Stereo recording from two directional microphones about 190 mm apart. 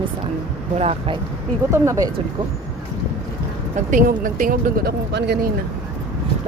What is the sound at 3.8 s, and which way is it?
Speech, 45° right (ahead or behind).